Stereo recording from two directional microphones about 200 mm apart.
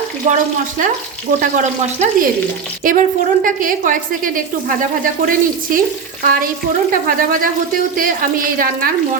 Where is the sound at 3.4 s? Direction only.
40° right (ahead or behind).